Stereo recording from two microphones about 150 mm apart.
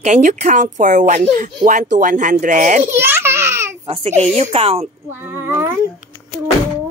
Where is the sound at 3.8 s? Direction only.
40° right (ahead or behind).